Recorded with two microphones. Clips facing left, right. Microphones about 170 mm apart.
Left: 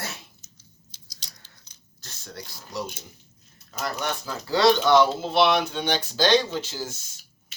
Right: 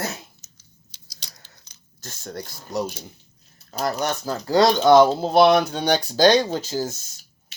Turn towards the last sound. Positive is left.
turn(degrees=-40)  # may be behind; listen again after turning